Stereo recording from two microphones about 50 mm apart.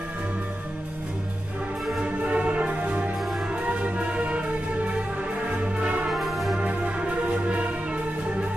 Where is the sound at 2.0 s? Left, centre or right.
Right.